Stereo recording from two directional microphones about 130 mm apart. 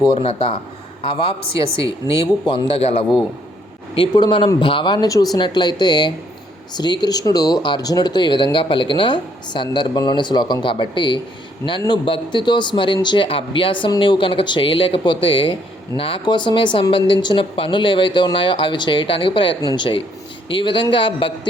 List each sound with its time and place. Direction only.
0.2 s a man's voice: 50° left (ahead or behind)
2.6 s a man's voice: 50° left (ahead or behind)
4.1 s speech: 35° left (ahead or behind)